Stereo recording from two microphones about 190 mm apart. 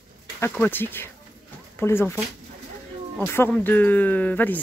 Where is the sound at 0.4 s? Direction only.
10° left (ahead or behind).